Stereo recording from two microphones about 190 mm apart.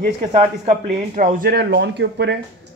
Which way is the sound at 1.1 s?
45° right (ahead or behind).